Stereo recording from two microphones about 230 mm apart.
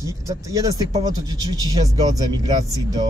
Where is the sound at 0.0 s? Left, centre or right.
Centre.